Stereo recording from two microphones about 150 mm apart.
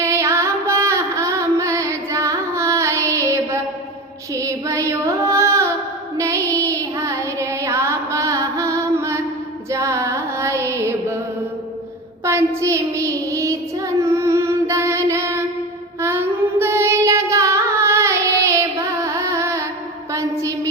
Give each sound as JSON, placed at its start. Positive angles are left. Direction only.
{"t": 0.0, "sound": "music", "side_deg": -20}
{"t": 4.4, "sound": "child singing", "side_deg": -20}
{"t": 9.7, "sound": "music", "side_deg": -20}
{"t": 12.2, "sound": "child singing", "side_deg": -20}
{"t": 14.0, "sound": "music", "side_deg": -20}
{"t": 16.0, "sound": "child singing", "side_deg": -15}
{"t": 20.1, "sound": "a sound", "side_deg": -20}